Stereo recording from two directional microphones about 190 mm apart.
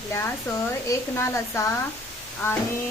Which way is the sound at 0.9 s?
15° left (ahead or behind).